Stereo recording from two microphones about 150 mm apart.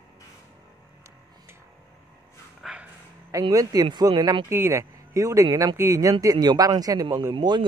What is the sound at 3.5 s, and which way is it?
Speech, 25° right (ahead or behind).